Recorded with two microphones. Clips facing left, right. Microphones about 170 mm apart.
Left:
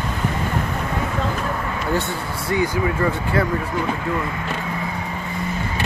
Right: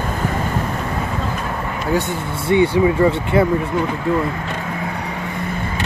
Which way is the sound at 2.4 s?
25° right (ahead or behind).